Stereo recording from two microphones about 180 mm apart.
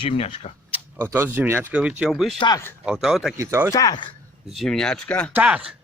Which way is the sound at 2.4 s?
20° left (ahead or behind).